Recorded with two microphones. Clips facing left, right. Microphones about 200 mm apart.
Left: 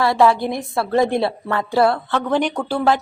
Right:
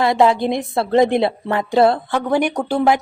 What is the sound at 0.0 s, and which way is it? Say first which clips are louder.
A woman's voice: right 1 dB; 20° right (ahead or behind).